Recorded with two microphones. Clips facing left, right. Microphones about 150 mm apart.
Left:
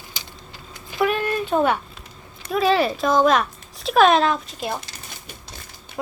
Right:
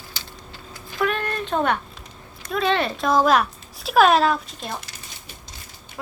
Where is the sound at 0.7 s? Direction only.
10° left (ahead or behind).